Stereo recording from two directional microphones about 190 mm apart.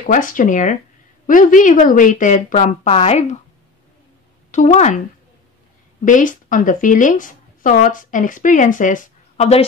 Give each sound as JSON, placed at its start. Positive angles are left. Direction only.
{"t": 0.0, "sound": "a woman's voice", "side_deg": 45}
{"t": 4.5, "sound": "speech", "side_deg": 40}
{"t": 6.0, "sound": "a woman's voice", "side_deg": 45}